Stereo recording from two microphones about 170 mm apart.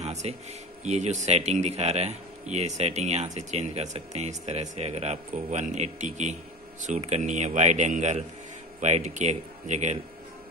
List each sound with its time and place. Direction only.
0.0 s speech: 40° right (ahead or behind)